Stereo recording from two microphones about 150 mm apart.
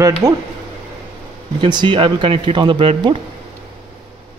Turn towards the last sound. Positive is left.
turn(degrees=-35)  # may be behind; listen again after turning